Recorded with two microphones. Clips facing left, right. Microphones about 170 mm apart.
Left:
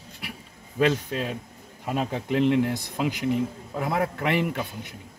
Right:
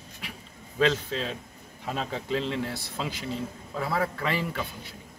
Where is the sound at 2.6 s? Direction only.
15° left (ahead or behind).